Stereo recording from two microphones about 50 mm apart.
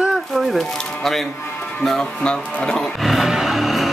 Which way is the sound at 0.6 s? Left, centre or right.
Centre.